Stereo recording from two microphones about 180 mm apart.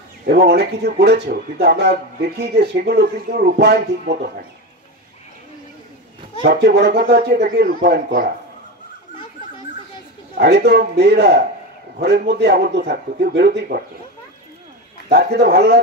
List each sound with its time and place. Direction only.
0.3 s speech: 60° right (ahead or behind)
4.0 s speech: 45° right (ahead or behind)
6.4 s speech: 65° right (ahead or behind)
10.3 s speech: 60° right (ahead or behind)
15.0 s speech: 60° right (ahead or behind)